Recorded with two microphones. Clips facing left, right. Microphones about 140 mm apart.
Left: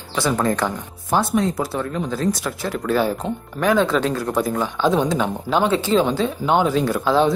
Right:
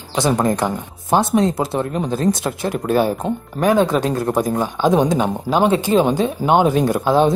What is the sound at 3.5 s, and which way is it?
Speech, 45° right (ahead or behind).